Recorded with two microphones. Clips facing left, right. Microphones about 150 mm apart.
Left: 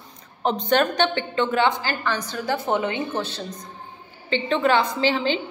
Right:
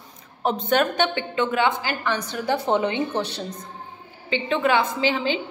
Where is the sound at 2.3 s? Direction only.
20° right (ahead or behind).